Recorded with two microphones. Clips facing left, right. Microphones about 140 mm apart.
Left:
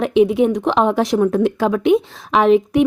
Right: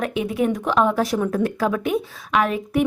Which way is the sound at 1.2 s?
Centre (ahead or behind).